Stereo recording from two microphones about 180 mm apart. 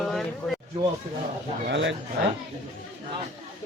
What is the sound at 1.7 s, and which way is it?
Speech, 90° right.